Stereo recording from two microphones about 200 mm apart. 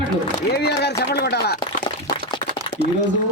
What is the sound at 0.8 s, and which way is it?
Speech, 55° left (ahead or behind).